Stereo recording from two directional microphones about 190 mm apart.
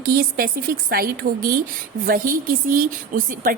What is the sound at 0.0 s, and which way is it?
A woman's voice, 50° right (ahead or behind).